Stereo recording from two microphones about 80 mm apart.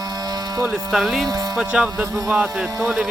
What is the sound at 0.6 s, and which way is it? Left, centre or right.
Speech, centre.